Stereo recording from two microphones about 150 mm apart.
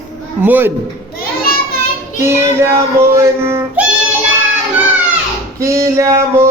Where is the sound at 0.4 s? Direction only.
10° right (ahead or behind).